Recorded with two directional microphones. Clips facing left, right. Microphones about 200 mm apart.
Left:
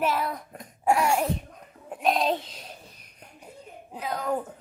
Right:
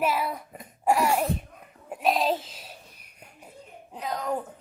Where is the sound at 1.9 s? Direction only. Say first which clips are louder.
Even; 5° right (ahead or behind).